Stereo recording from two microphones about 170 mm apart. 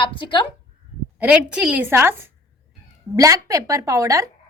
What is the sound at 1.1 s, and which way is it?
A woman's voice, 5° right (ahead or behind).